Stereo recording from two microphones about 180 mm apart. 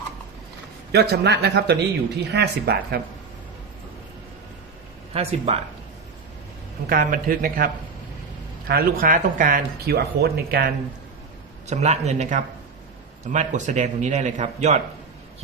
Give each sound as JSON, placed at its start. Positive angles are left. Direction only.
{"t": 0.9, "sound": "speech", "side_deg": -65}
{"t": 5.1, "sound": "a man's voice", "side_deg": -35}
{"t": 6.8, "sound": "a man's voice", "side_deg": -50}
{"t": 11.7, "sound": "a man's voice", "side_deg": -40}